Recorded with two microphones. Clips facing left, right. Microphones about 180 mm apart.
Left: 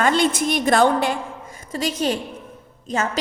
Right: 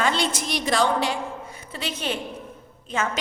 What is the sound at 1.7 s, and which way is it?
A woman's voice, 40° left (ahead or behind).